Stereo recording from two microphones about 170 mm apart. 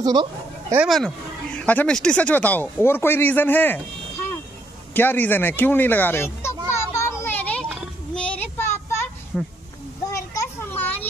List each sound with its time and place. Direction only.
0.0 s a sound: 25° right (ahead or behind)
0.7 s speech: centre (ahead or behind)
4.9 s children playing: 10° left (ahead or behind)
8.1 s child singing: 5° left (ahead or behind)
9.3 s speech: centre (ahead or behind)
10.1 s children playing: 15° left (ahead or behind)